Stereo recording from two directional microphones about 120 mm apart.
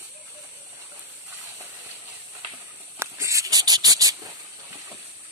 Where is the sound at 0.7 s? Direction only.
15° right (ahead or behind).